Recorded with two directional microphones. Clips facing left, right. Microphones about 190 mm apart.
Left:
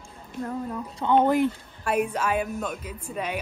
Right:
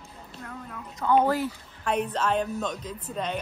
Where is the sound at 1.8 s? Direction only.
10° left (ahead or behind).